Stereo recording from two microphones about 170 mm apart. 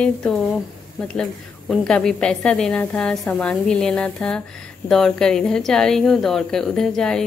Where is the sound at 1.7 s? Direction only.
5° left (ahead or behind).